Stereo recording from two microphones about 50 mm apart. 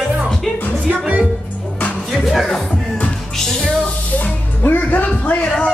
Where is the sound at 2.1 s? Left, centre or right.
Centre.